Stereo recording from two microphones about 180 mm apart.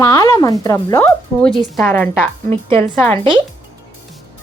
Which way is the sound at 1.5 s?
5° left (ahead or behind).